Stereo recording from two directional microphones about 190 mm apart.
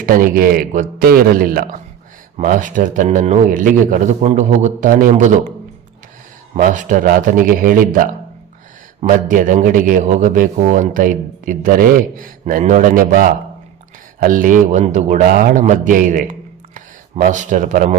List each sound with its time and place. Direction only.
0.0 s a man's voice: 50° right (ahead or behind)